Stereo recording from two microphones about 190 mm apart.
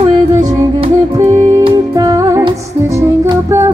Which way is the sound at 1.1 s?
15° right (ahead or behind).